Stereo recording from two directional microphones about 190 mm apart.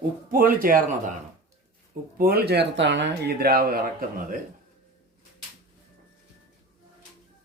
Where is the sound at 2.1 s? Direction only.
50° right (ahead or behind).